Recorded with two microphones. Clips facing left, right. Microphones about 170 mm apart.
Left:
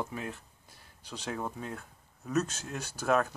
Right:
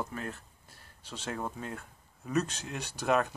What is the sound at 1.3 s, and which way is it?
Speech, centre (ahead or behind).